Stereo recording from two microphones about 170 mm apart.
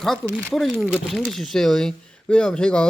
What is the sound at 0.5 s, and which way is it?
Speech, centre (ahead or behind).